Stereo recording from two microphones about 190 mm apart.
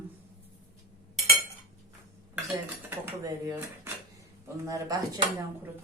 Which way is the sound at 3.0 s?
15° right (ahead or behind).